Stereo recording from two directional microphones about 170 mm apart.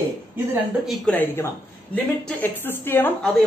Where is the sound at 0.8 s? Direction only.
10° left (ahead or behind).